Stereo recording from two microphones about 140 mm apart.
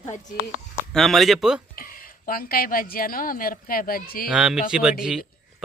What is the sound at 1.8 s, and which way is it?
A woman's voice, 90° left.